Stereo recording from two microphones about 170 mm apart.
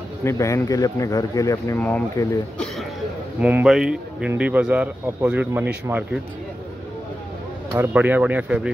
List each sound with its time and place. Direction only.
0.2 s speech: 15° left (ahead or behind)
3.3 s a man's voice: 10° right (ahead or behind)
7.7 s a man's voice: 10° right (ahead or behind)